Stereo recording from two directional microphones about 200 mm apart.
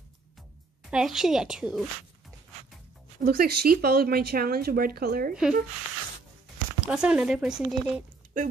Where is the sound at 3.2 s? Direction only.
50° right (ahead or behind).